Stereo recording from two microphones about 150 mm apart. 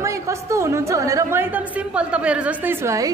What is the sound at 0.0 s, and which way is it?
Speech, 20° right (ahead or behind).